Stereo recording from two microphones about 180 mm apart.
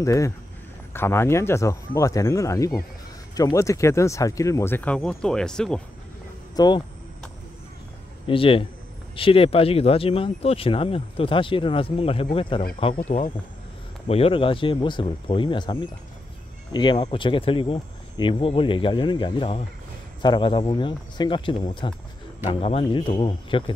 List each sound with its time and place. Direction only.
0.0 s speech: 15° left (ahead or behind)
6.5 s speech: 20° left (ahead or behind)
8.3 s speech: 30° left (ahead or behind)